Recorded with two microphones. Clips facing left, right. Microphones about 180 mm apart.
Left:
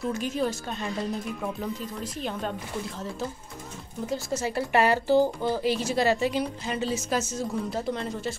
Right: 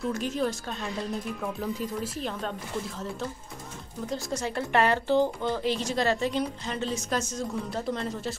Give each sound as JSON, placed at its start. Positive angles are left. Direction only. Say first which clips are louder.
{"t": 0.0, "sound": "speech", "louder": "left 1 dB", "side_deg": 0}
{"t": 4.0, "sound": "speech", "louder": "left 2 dB", "side_deg": 5}